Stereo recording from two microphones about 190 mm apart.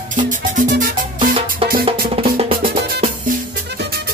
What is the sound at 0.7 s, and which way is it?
Music, 45° right (ahead or behind).